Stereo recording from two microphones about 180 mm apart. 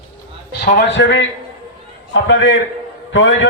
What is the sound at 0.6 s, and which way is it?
Speech, 75° left (ahead or behind).